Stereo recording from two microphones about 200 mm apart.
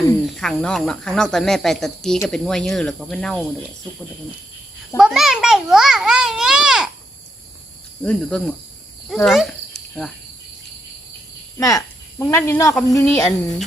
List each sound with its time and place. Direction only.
0.3 s a child's voice: centre (ahead or behind)
4.9 s a child's voice: centre (ahead or behind)
8.0 s a child's voice: 5° left (ahead or behind)
9.0 s dog: centre (ahead or behind)
11.5 s speech: 15° left (ahead or behind)